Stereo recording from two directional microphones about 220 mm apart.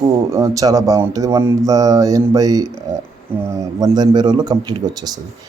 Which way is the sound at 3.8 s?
20° right (ahead or behind).